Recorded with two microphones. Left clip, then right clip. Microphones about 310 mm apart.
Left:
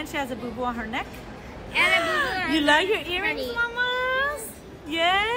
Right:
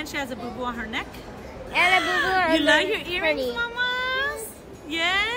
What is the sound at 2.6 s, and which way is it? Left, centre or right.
Speech, centre.